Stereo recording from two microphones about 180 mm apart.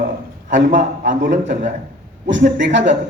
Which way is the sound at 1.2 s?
80° right.